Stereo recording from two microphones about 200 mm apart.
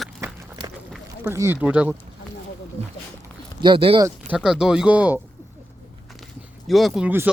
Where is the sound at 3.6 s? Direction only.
25° right (ahead or behind).